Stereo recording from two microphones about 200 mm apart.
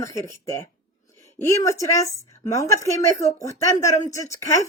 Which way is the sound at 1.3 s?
15° left (ahead or behind).